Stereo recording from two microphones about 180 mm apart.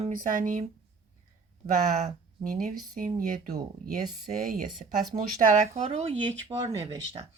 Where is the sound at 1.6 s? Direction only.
40° right (ahead or behind).